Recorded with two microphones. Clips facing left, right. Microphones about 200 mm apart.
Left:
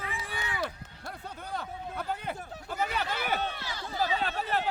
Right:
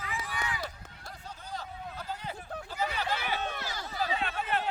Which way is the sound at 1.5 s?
60° left (ahead or behind).